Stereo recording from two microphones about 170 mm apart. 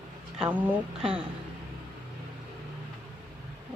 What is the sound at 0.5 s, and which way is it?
Speech, 10° right (ahead or behind).